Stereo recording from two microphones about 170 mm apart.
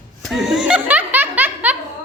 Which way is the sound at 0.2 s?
Centre (ahead or behind).